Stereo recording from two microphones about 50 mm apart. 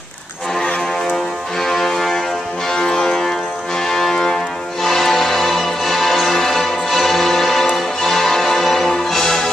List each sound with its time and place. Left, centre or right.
1.6 s music: centre